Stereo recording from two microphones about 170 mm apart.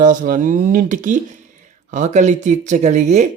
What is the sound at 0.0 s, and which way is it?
Speech, 50° right (ahead or behind).